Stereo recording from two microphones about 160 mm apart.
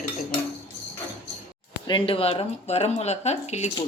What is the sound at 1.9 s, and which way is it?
Speech, 35° left (ahead or behind).